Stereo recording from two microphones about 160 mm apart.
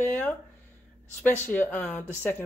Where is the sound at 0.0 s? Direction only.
10° left (ahead or behind).